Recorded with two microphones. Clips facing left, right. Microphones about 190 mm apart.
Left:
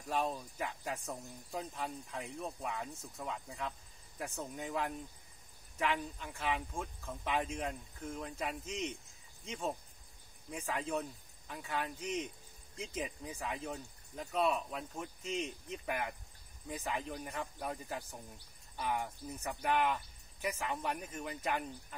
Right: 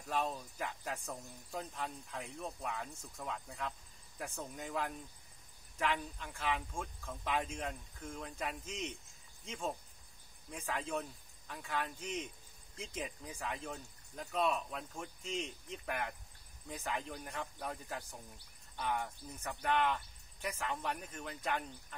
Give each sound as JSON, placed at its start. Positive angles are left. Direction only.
{"t": 0.1, "sound": "speech", "side_deg": 0}